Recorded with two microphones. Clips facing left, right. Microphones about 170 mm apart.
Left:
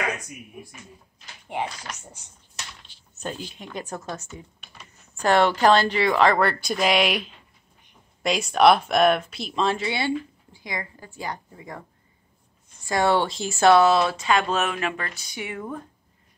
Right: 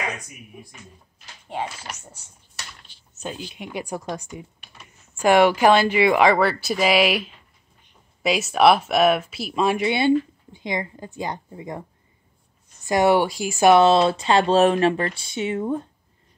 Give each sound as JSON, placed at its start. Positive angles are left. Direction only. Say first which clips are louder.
{"t": 2.0, "sound": "typing", "louder": "even", "side_deg": 15}
{"t": 3.2, "sound": "speech", "louder": "right 1 dB", "side_deg": -5}
{"t": 12.8, "sound": "speech", "louder": "right 4 dB", "side_deg": -15}
{"t": 13.8, "sound": "speech", "louder": "right 3 dB", "side_deg": -25}